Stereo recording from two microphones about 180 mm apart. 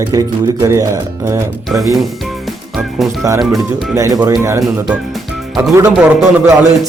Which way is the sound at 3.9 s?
20° right (ahead or behind).